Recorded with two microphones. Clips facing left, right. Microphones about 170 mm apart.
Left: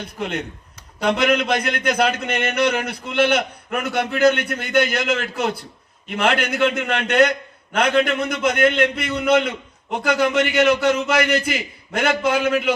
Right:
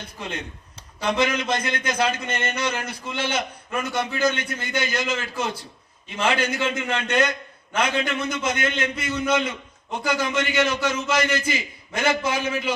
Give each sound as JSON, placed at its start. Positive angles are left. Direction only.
{"t": 0.9, "sound": "a man's voice", "side_deg": 65}